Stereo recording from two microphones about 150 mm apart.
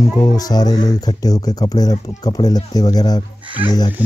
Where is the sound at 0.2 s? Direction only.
25° left (ahead or behind).